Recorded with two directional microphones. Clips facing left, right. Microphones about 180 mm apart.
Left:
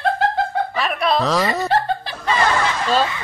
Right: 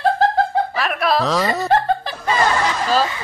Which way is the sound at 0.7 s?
Centre (ahead or behind).